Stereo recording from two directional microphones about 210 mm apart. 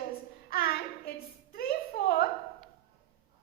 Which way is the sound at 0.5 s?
45° left (ahead or behind).